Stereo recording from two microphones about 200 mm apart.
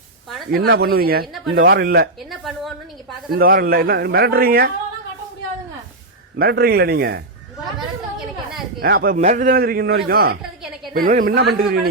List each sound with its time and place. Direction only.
0.5 s a man's voice: 55° right (ahead or behind)
2.3 s a sound: centre (ahead or behind)
3.3 s a man's voice: 50° right (ahead or behind)
6.3 s a man's voice: 55° right (ahead or behind)
8.8 s a man's voice: 50° right (ahead or behind)
10.4 s a sound: 5° right (ahead or behind)
10.9 s a man's voice: 45° right (ahead or behind)